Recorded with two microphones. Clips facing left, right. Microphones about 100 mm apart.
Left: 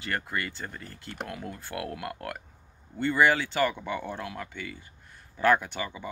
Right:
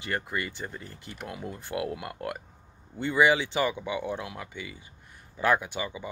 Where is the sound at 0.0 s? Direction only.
15° right (ahead or behind).